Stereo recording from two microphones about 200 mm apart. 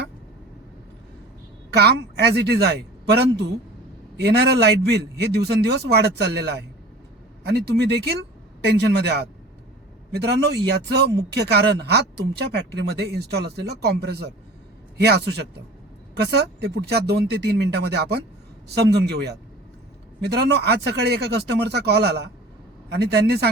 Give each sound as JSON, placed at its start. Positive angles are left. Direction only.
{"t": 1.7, "sound": "a woman's voice", "side_deg": -55}